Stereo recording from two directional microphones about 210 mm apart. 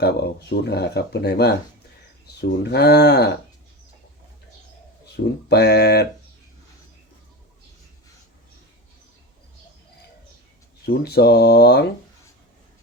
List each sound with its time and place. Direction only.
0.0 s speech: 50° left (ahead or behind)
5.1 s speech: 50° left (ahead or behind)
10.8 s speech: 50° left (ahead or behind)